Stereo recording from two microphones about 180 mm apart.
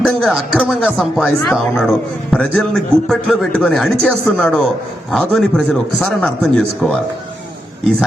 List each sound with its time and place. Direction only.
0.0 s speech: centre (ahead or behind)